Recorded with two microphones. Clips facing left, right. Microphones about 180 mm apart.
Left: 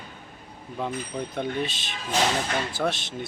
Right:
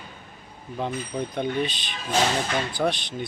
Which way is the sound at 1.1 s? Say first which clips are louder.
Right 5 dB; 10° right (ahead or behind).